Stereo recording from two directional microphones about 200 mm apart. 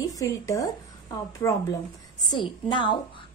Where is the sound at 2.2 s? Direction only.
20° left (ahead or behind).